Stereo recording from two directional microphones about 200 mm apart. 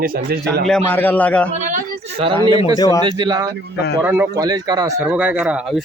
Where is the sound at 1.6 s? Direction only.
40° right (ahead or behind).